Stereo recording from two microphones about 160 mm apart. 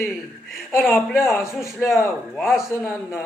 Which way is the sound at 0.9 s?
15° left (ahead or behind).